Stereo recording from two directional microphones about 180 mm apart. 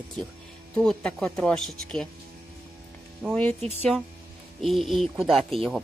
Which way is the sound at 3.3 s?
10° left (ahead or behind).